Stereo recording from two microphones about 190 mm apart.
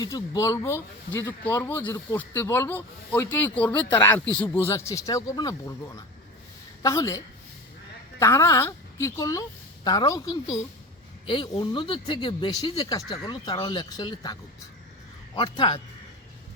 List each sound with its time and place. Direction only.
0.0 s speech: 15° left (ahead or behind)
8.2 s a woman's voice: 15° left (ahead or behind)
15.4 s speech: 25° left (ahead or behind)